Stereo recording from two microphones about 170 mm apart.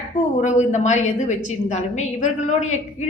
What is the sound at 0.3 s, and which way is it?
A woman's voice, 45° left (ahead or behind).